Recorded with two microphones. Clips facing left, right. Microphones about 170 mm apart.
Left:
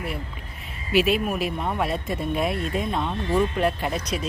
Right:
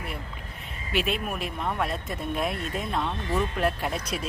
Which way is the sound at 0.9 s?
5° left (ahead or behind).